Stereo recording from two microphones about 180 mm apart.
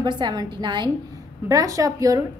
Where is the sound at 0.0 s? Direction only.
25° right (ahead or behind).